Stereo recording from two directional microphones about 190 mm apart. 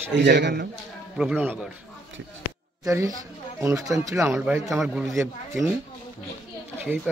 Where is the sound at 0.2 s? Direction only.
60° right (ahead or behind).